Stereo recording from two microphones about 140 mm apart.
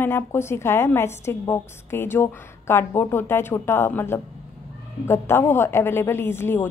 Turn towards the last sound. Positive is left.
turn(degrees=15)  # may be behind; listen again after turning